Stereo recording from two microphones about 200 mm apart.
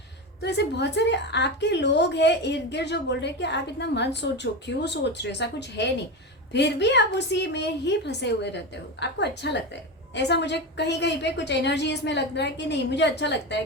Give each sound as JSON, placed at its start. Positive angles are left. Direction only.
{"t": 0.4, "sound": "a woman's voice", "side_deg": 60}